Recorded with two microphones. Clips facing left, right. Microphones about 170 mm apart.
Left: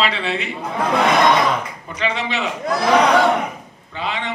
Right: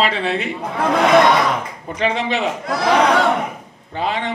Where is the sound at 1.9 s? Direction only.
50° right (ahead or behind).